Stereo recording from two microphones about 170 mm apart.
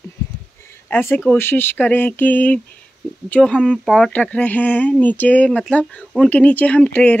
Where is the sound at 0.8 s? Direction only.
10° left (ahead or behind).